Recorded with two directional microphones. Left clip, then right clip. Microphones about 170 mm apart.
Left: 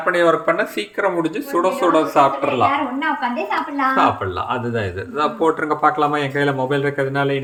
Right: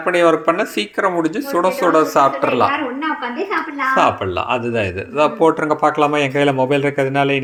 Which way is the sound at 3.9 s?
20° right (ahead or behind).